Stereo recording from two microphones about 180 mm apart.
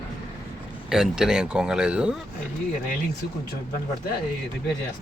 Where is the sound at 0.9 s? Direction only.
Centre (ahead or behind).